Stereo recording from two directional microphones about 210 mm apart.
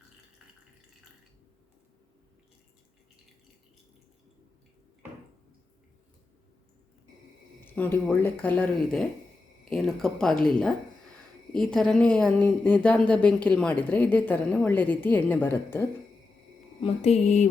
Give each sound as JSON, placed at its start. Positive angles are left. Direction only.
{"t": 7.6, "sound": "speech", "side_deg": 10}
{"t": 11.5, "sound": "speech", "side_deg": 0}
{"t": 16.8, "sound": "a sound", "side_deg": 30}